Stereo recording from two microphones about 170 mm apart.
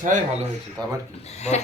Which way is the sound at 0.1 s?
50° right (ahead or behind).